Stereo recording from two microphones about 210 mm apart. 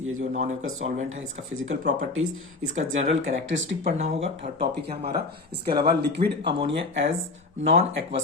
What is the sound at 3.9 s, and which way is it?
Speech, 30° right (ahead or behind).